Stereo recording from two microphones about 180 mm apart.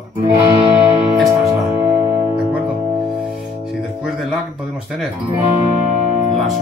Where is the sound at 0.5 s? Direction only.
15° right (ahead or behind).